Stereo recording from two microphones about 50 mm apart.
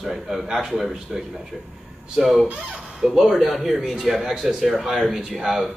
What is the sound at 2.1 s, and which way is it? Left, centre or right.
A man's voice, centre.